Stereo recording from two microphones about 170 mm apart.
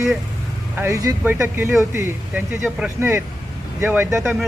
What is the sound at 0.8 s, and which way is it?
Speech, 20° right (ahead or behind).